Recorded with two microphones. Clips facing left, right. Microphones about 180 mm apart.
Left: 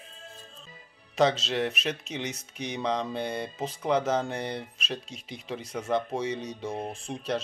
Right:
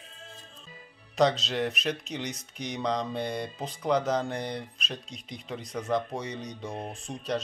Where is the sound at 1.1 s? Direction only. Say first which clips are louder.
Even; centre (ahead or behind).